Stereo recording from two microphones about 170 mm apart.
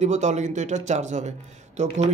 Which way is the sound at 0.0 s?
45° right (ahead or behind).